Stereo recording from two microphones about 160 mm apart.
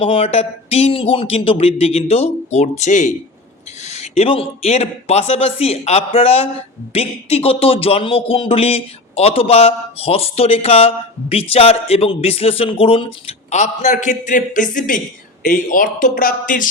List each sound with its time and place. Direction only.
0.0 s a man's voice: 35° left (ahead or behind)
13.2 s a man's voice: 45° left (ahead or behind)